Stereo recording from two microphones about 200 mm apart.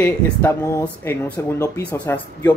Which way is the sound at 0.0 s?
10° left (ahead or behind).